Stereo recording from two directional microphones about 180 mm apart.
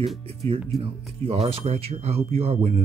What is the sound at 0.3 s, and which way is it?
Speech, 35° right (ahead or behind).